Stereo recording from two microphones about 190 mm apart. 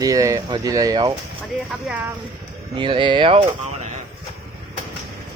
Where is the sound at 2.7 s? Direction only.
25° right (ahead or behind).